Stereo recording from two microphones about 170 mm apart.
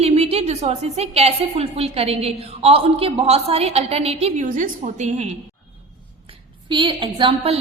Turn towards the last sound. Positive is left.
turn(degrees=-30)  # may be behind; listen again after turning